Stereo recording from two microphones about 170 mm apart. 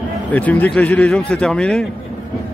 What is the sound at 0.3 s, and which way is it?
Speech, 10° left (ahead or behind).